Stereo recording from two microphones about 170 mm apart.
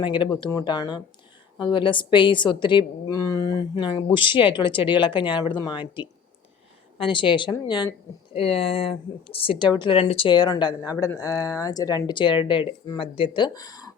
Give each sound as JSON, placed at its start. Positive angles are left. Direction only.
{"t": 0.0, "sound": "speech", "side_deg": 30}
{"t": 7.0, "sound": "speech", "side_deg": 30}
{"t": 8.4, "sound": "speech", "side_deg": 35}